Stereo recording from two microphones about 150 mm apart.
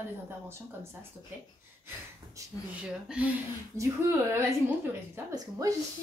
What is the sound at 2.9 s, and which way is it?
Speech, 5° right (ahead or behind).